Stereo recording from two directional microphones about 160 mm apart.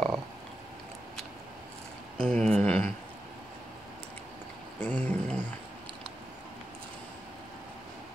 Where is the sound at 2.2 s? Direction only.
5° left (ahead or behind).